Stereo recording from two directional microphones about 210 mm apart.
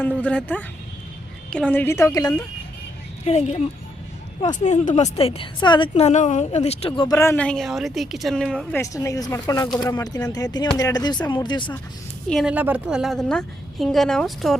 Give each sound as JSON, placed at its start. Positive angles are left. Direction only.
{"t": 0.2, "sound": "a woman's voice", "side_deg": 5}
{"t": 3.2, "sound": "a woman's voice", "side_deg": 30}
{"t": 8.8, "sound": "a woman's voice", "side_deg": 15}
{"t": 12.3, "sound": "a woman's voice", "side_deg": 0}